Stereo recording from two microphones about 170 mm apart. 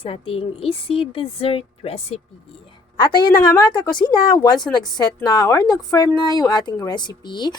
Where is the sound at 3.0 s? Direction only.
25° left (ahead or behind).